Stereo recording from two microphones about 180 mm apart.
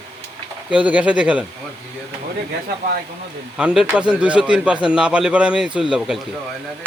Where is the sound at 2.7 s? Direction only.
60° right (ahead or behind).